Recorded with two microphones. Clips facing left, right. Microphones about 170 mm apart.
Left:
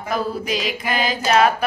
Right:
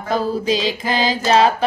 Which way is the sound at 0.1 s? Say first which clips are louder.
Right 4 dB; 30° right (ahead or behind).